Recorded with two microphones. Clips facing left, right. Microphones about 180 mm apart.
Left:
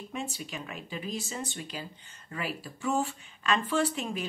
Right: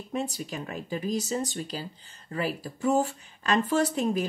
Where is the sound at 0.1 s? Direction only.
40° right (ahead or behind).